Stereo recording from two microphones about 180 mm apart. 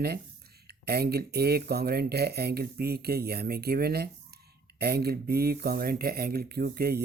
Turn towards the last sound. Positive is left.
turn(degrees=-60)  # may be behind; listen again after turning